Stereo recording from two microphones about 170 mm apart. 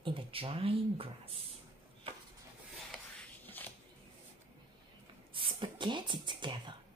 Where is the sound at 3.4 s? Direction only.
10° left (ahead or behind).